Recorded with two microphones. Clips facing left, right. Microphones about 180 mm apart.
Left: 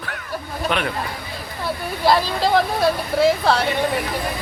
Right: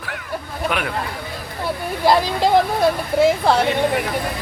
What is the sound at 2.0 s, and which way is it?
Speech, 20° right (ahead or behind).